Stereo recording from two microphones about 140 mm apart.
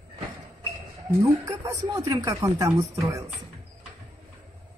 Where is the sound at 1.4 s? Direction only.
25° right (ahead or behind).